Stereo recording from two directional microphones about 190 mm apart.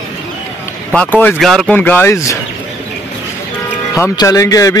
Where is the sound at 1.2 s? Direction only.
Centre (ahead or behind).